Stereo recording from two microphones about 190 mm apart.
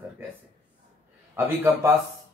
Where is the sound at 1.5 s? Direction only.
10° right (ahead or behind).